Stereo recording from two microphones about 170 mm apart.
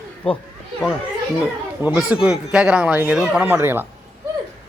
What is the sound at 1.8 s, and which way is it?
A man's voice, 5° right (ahead or behind).